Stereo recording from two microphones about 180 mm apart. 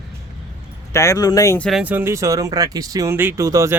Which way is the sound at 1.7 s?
5° right (ahead or behind).